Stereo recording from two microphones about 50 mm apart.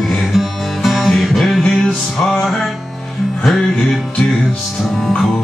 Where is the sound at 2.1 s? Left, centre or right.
Centre.